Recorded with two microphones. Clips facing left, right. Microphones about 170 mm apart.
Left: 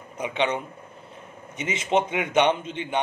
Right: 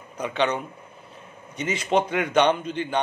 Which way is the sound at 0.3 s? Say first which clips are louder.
Right 1 dB; 20° left (ahead or behind).